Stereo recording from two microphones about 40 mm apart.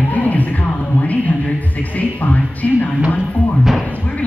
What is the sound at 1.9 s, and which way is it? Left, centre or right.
Speech, left.